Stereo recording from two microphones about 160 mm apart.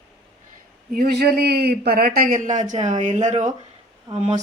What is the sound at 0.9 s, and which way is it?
A man's voice, 70° right (ahead or behind).